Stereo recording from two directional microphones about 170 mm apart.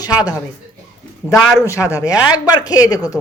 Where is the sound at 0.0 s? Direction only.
20° left (ahead or behind).